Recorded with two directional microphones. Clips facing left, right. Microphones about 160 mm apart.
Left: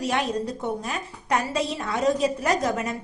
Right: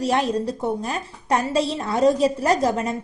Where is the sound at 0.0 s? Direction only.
35° right (ahead or behind).